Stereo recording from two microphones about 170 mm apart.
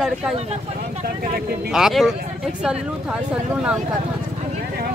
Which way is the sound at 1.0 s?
65° right (ahead or behind).